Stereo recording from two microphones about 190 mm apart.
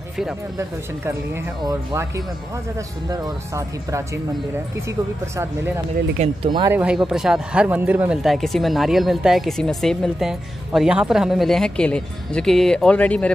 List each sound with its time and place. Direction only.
0.6 s speech: 10° right (ahead or behind)
6.1 s speech: 30° right (ahead or behind)
6.7 s speech: 5° right (ahead or behind)